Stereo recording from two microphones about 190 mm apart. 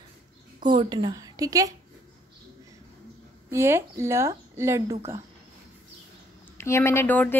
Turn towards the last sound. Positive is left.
turn(degrees=10)  # may be behind; listen again after turning